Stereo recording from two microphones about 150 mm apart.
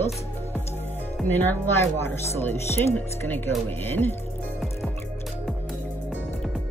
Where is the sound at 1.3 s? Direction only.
15° left (ahead or behind).